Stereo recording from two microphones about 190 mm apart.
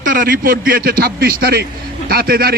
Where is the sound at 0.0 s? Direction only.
45° right (ahead or behind).